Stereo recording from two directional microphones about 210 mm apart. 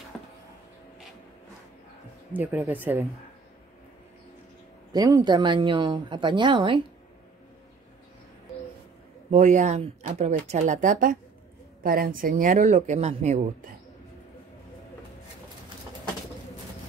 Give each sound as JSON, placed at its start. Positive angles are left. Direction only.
{"t": 0.1, "sound": "a sound", "side_deg": 5}
{"t": 2.3, "sound": "speech", "side_deg": -10}
{"t": 4.9, "sound": "speech", "side_deg": -20}
{"t": 9.3, "sound": "speech", "side_deg": -35}